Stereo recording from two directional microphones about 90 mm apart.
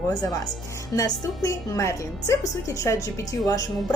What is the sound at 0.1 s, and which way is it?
Speech, 40° left (ahead or behind).